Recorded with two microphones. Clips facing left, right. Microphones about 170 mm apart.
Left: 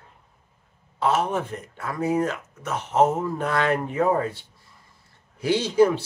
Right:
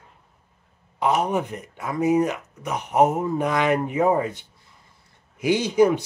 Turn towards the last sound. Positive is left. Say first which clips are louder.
# right 1 dB
turn(degrees=-15)  # may be behind; listen again after turning